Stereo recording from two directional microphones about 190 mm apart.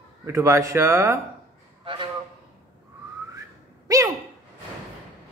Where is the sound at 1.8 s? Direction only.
25° right (ahead or behind).